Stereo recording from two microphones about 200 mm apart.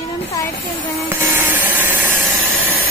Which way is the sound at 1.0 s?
10° right (ahead or behind).